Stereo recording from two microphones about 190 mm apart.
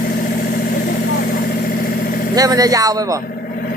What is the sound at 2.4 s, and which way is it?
Speech, 20° right (ahead or behind).